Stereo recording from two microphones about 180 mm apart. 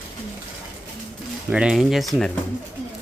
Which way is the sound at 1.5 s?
5° right (ahead or behind).